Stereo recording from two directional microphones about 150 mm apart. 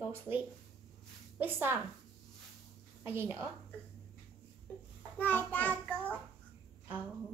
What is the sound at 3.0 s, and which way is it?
Speech, 15° right (ahead or behind).